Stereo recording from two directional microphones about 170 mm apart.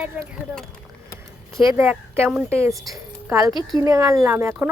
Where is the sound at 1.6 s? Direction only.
15° right (ahead or behind).